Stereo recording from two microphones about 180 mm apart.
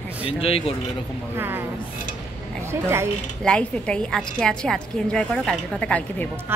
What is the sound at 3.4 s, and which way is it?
A woman's voice, 5° left (ahead or behind).